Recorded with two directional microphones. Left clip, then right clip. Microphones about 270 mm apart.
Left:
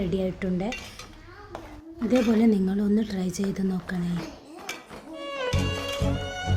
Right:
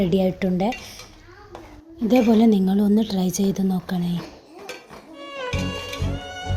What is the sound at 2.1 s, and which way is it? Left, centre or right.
A woman's voice, centre.